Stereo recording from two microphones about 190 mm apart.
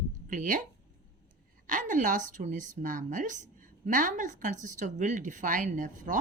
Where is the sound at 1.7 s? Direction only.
45° right (ahead or behind).